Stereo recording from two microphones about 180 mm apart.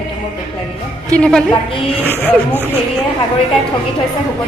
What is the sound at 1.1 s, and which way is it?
Speech, 5° left (ahead or behind).